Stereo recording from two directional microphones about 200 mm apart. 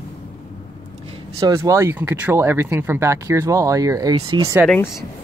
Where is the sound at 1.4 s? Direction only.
15° right (ahead or behind).